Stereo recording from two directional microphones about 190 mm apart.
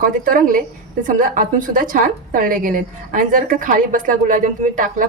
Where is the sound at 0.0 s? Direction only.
45° right (ahead or behind).